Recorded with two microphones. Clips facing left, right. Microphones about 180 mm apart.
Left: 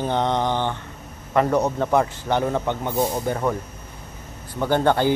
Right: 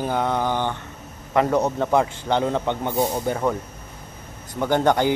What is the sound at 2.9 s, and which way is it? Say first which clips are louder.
Speech: even; 5° right (ahead or behind).